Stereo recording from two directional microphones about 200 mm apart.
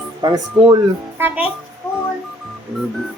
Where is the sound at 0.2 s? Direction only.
20° right (ahead or behind).